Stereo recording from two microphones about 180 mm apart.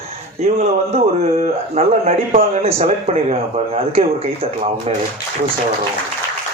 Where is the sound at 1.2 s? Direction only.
35° right (ahead or behind).